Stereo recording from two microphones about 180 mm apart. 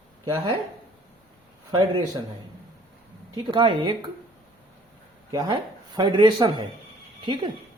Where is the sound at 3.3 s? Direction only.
25° right (ahead or behind).